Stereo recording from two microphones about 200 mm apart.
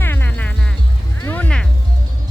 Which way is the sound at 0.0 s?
10° left (ahead or behind).